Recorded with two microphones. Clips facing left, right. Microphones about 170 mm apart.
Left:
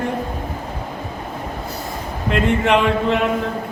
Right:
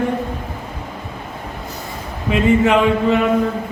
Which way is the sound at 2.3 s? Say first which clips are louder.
Right 3 dB; centre (ahead or behind).